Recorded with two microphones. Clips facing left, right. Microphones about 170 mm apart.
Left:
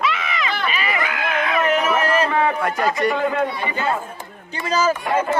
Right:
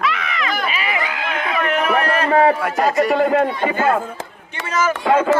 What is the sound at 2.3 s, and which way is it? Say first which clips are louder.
A man's voice: right 5 dB; 40° right (ahead or behind).